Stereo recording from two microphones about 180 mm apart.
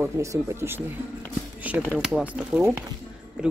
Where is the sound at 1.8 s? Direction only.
Centre (ahead or behind).